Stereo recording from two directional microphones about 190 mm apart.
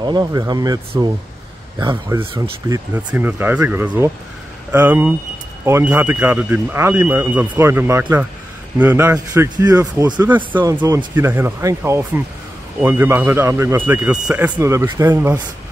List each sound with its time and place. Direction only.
0.0 s speech: 20° right (ahead or behind)
1.8 s speech: 25° right (ahead or behind)
2.9 s speech: 10° right (ahead or behind)
10.2 s speech: 10° right (ahead or behind)